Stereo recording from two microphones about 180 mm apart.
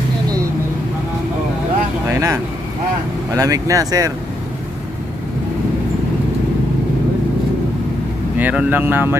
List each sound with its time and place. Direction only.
2.0 s vehicle: 15° right (ahead or behind)
3.3 s speech: 20° right (ahead or behind)
8.4 s speech: 10° right (ahead or behind)